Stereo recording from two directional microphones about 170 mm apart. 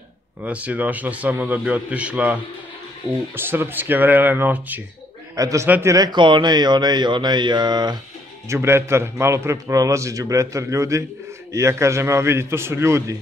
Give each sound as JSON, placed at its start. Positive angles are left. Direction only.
{"t": 0.4, "sound": "a man's voice", "side_deg": -10}